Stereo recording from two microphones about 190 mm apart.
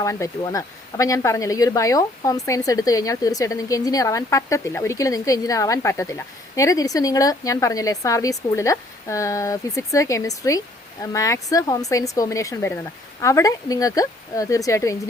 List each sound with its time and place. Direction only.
0.0 s speech: 15° left (ahead or behind)